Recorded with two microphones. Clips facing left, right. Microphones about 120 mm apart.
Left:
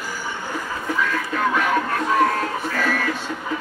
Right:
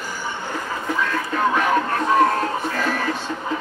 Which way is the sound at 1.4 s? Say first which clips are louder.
Right 2 dB; 25° right (ahead or behind).